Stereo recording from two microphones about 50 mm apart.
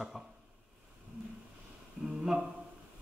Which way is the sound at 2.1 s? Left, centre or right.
Centre.